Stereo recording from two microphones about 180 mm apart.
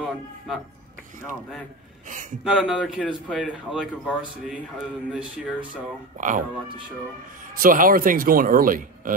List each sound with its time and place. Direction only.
0.0 s a man's voice: centre (ahead or behind)
2.4 s speech: 5° right (ahead or behind)
6.1 s speech: 45° right (ahead or behind)
7.5 s speech: 50° right (ahead or behind)